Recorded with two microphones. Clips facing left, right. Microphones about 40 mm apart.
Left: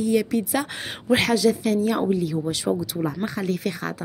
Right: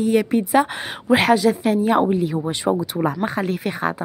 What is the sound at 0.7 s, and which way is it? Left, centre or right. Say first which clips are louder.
Speech: right 3 dB; centre.